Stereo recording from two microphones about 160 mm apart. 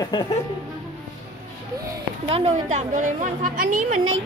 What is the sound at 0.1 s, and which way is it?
Speech, 30° left (ahead or behind).